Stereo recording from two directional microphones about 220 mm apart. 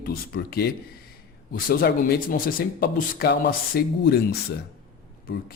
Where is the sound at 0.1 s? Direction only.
45° left (ahead or behind).